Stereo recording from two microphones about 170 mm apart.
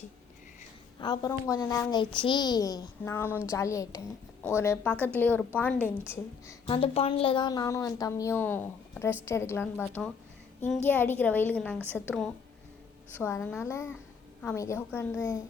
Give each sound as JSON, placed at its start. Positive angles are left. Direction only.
{"t": 0.9, "sound": "a woman's voice", "side_deg": 25}
{"t": 6.7, "sound": "a woman's voice", "side_deg": 35}
{"t": 9.8, "sound": "a woman's voice", "side_deg": 5}